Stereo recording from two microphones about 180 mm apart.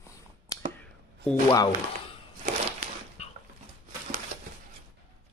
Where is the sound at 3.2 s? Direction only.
35° left (ahead or behind).